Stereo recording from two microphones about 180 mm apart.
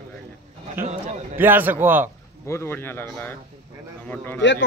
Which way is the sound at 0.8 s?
10° right (ahead or behind).